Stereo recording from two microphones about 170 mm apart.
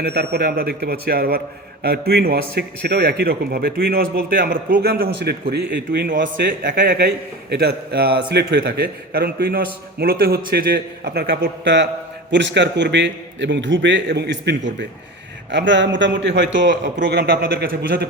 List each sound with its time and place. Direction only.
0.0 s a man's voice: 70° right (ahead or behind)